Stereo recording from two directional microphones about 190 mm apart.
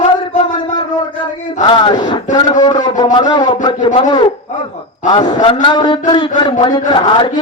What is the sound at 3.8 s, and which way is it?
Speech, 40° left (ahead or behind).